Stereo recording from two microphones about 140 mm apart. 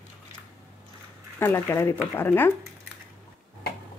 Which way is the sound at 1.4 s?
15° left (ahead or behind).